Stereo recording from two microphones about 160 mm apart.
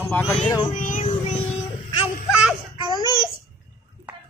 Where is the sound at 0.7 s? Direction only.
55° left (ahead or behind).